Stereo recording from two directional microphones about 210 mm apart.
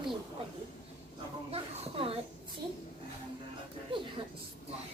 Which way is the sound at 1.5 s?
30° right (ahead or behind).